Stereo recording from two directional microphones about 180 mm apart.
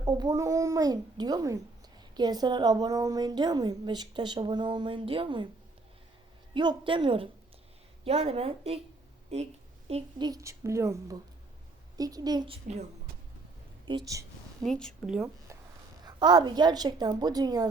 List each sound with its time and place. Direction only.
0.0 s a woman's voice: 25° right (ahead or behind)
6.5 s a woman's voice: 25° right (ahead or behind)
13.8 s a woman's voice: 20° right (ahead or behind)
14.6 s a woman's voice: 5° left (ahead or behind)
16.0 s a woman's voice: 20° right (ahead or behind)